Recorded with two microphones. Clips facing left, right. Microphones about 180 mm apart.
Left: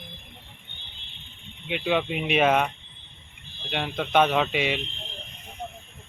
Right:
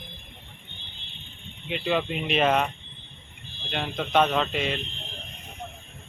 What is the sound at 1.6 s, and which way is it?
Speech, centre (ahead or behind).